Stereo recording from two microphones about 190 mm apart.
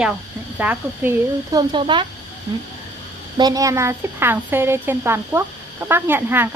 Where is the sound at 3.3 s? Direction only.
20° right (ahead or behind).